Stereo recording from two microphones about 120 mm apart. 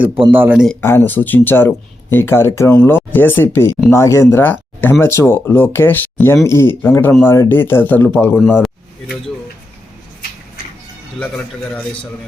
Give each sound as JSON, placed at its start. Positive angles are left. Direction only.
{"t": 0.3, "sound": "speech", "side_deg": -15}
{"t": 0.8, "sound": "speech", "side_deg": 20}
{"t": 8.6, "sound": "a sound", "side_deg": 5}